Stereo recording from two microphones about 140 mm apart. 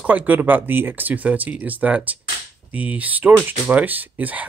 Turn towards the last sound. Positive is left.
turn(degrees=-10)  # may be behind; listen again after turning